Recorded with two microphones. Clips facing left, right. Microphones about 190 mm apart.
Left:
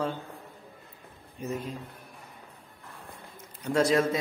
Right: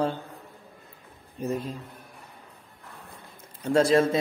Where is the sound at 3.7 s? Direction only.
30° right (ahead or behind).